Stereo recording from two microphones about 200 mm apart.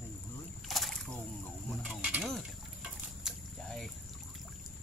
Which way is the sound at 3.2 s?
Centre (ahead or behind).